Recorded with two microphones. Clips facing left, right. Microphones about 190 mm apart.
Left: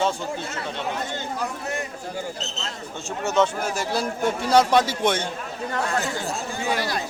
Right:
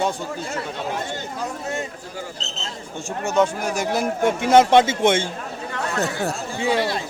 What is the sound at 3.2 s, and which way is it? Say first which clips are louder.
A man's voice: right 1 dB; 10° right (ahead or behind).